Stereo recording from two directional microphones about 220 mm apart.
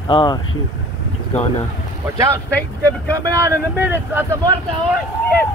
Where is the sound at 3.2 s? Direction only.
15° right (ahead or behind).